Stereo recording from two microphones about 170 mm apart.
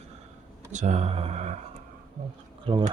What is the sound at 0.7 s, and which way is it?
Speech, 45° right (ahead or behind).